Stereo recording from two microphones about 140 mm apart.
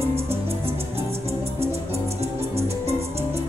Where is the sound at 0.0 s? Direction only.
45° right (ahead or behind).